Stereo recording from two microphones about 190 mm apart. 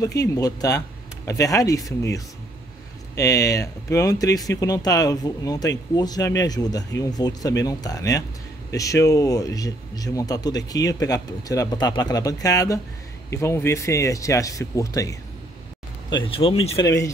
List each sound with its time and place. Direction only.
0.0 s speech: 20° left (ahead or behind)
16.2 s speech: 30° left (ahead or behind)
16.8 s speech: 15° left (ahead or behind)